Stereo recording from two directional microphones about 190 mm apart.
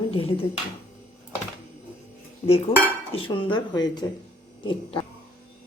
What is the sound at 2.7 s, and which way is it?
A woman's voice, 30° left (ahead or behind).